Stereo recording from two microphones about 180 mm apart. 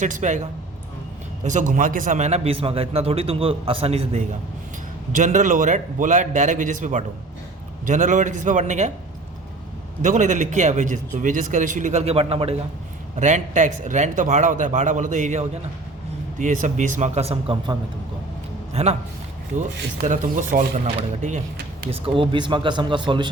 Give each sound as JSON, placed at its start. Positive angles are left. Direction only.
{"t": 0.0, "sound": "a man's voice", "side_deg": -40}
{"t": 1.5, "sound": "a man's voice", "side_deg": -45}
{"t": 5.1, "sound": "a man's voice", "side_deg": -45}
{"t": 10.0, "sound": "a man's voice", "side_deg": -45}
{"t": 20.0, "sound": "a man's voice", "side_deg": -45}
{"t": 21.8, "sound": "speech", "side_deg": -30}